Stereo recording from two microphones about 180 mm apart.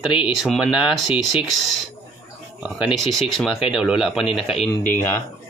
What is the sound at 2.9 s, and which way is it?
Speech, centre (ahead or behind).